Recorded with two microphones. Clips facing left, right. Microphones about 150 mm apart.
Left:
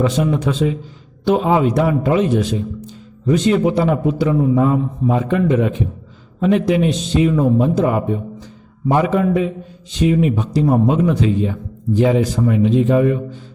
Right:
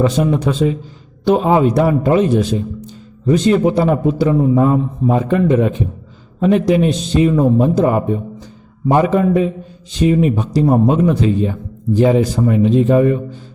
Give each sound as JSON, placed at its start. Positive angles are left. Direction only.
{"t": 0.0, "sound": "a man's voice", "side_deg": -35}